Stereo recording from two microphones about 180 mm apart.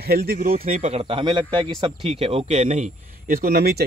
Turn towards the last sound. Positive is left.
turn(degrees=-60)  # may be behind; listen again after turning